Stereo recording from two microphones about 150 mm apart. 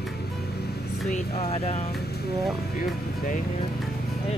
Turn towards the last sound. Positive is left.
turn(degrees=65)  # may be behind; listen again after turning